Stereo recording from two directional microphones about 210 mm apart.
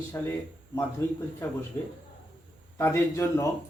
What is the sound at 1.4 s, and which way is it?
Speech, 10° left (ahead or behind).